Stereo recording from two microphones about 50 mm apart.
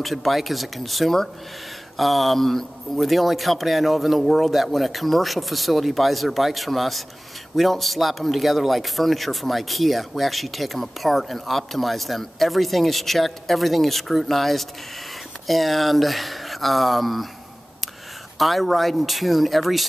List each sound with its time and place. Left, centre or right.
0.0 s a man's voice: centre
18.4 s a man's voice: centre